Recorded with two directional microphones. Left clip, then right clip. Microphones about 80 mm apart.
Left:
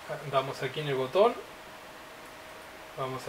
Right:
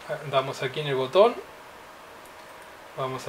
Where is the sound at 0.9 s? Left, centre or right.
Right.